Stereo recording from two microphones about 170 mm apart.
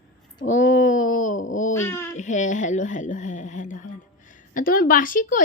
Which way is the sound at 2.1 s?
45° left (ahead or behind).